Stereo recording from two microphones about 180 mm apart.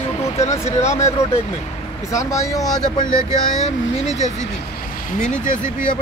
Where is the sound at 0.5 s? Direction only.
35° left (ahead or behind).